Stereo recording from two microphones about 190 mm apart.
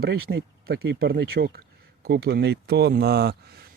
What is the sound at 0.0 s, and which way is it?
Speech, 60° right (ahead or behind).